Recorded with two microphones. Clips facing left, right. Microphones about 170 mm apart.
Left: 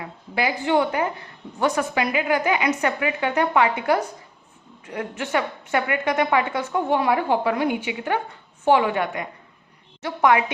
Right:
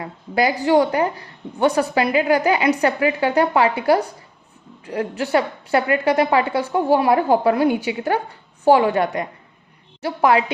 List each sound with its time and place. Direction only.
0.0 s a woman's voice: 40° right (ahead or behind)